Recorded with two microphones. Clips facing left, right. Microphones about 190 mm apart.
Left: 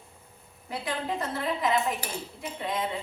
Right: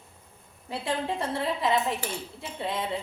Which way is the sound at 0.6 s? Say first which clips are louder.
Right 2 dB; 30° right (ahead or behind).